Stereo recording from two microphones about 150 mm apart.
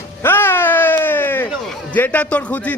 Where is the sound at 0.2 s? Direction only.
15° left (ahead or behind).